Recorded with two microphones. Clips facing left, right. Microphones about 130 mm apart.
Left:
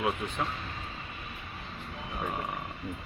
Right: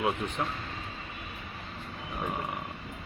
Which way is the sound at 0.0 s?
20° right (ahead or behind).